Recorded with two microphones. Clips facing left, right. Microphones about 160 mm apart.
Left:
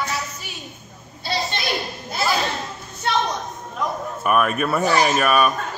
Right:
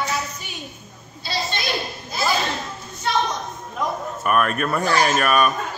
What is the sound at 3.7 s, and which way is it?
A man's voice, centre (ahead or behind).